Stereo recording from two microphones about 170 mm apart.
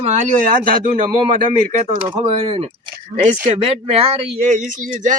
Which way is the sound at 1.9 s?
35° right (ahead or behind).